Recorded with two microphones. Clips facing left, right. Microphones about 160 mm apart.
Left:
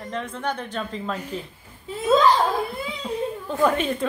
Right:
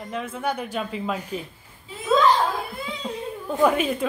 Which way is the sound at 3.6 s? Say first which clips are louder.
Right 1 dB; 5° right (ahead or behind).